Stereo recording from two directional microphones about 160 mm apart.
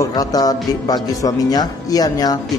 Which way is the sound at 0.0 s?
25° left (ahead or behind).